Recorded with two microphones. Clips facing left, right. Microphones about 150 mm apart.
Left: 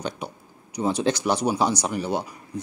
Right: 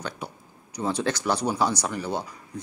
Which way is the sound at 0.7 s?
15° left (ahead or behind).